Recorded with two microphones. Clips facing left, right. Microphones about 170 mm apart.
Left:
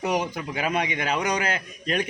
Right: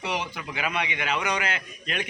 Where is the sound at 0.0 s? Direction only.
45° left (ahead or behind).